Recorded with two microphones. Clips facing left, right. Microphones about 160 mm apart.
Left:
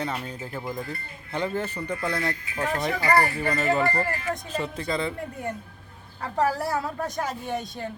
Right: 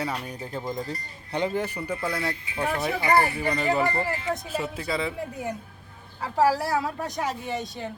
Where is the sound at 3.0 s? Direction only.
20° right (ahead or behind).